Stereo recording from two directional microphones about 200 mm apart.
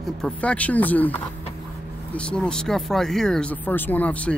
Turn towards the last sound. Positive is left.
turn(degrees=5)  # may be behind; listen again after turning